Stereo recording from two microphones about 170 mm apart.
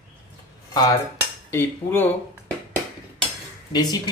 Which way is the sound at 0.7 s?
25° left (ahead or behind).